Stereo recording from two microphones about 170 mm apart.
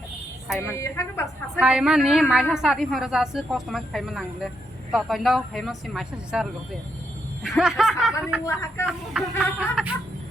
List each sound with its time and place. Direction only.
0.4 s speech: centre (ahead or behind)
0.8 s a woman's voice: 15° left (ahead or behind)
1.5 s a woman's voice: 5° right (ahead or behind)
8.4 s a woman's voice: 15° left (ahead or behind)
8.9 s a woman's voice: 5° right (ahead or behind)